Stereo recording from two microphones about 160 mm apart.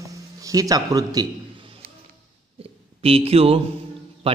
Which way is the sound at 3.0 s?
35° right (ahead or behind).